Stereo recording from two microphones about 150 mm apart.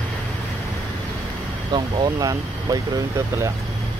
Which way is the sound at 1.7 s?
30° right (ahead or behind).